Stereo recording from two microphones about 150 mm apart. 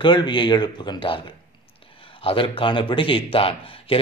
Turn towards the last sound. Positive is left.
turn(degrees=40)  # may be behind; listen again after turning